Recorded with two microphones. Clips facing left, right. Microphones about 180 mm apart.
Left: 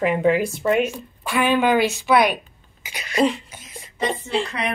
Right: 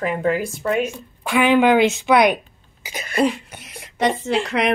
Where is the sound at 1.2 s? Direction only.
15° right (ahead or behind).